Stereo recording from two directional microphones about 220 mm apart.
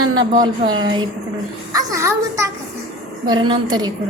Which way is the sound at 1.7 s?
15° right (ahead or behind).